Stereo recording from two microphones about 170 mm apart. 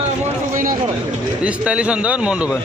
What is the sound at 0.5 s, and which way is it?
Speech, 55° right (ahead or behind).